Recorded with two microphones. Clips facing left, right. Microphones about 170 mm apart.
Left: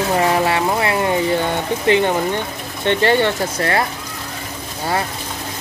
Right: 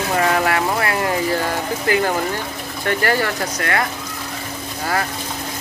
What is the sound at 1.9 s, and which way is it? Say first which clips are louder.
Speech: left 4 dB; 25° left (ahead or behind).